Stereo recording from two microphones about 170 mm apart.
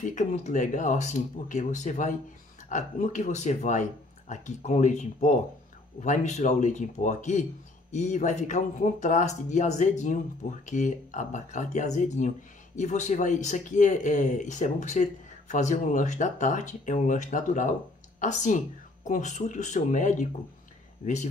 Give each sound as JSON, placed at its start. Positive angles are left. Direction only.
{"t": 0.0, "sound": "a man's voice", "side_deg": 45}